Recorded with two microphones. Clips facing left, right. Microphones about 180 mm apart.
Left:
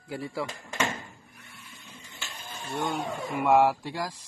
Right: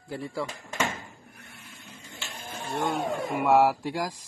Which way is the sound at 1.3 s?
55° right (ahead or behind).